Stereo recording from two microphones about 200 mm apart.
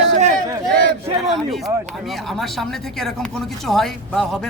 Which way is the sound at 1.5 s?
Centre (ahead or behind).